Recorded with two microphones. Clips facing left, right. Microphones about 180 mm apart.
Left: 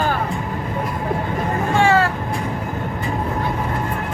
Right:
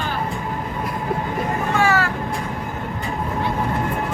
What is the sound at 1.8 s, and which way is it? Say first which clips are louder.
Vehicle: left 4 dB; 30° left (ahead or behind).